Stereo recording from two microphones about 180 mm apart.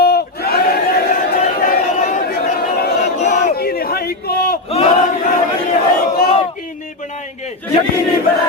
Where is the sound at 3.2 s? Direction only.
45° left (ahead or behind).